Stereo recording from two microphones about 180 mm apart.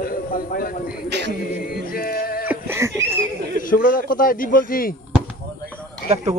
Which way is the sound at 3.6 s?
50° left (ahead or behind).